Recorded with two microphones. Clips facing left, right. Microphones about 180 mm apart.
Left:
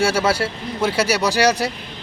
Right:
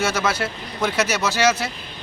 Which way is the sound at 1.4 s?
35° left (ahead or behind).